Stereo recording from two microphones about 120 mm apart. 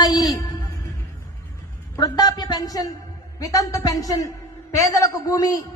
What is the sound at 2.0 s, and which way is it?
A woman's voice, 35° left (ahead or behind).